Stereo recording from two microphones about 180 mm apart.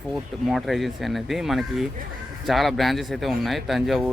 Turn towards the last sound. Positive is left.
turn(degrees=0)  # may be behind; listen again after turning